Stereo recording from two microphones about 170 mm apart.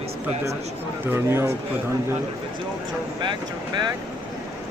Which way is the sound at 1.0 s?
15° right (ahead or behind).